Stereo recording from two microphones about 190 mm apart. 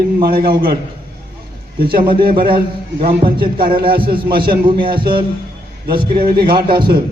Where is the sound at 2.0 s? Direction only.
25° right (ahead or behind).